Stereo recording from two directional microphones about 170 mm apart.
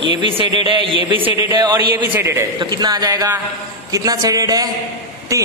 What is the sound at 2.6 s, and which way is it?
A man's voice, 25° right (ahead or behind).